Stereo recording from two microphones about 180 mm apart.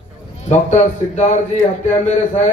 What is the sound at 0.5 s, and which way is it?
A man's voice, 40° left (ahead or behind).